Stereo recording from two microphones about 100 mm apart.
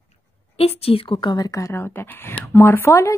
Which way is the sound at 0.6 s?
80° left.